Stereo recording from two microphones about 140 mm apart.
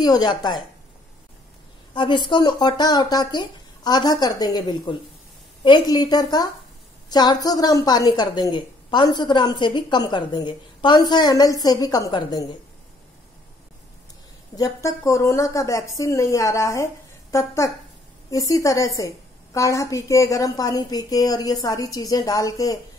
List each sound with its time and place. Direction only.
0.0 s a woman's voice: 30° left (ahead or behind)
2.0 s a woman's voice: 35° left (ahead or behind)
14.5 s a woman's voice: 25° left (ahead or behind)